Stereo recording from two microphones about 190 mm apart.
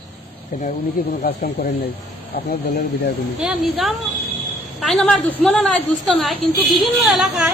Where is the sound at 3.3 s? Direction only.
Centre (ahead or behind).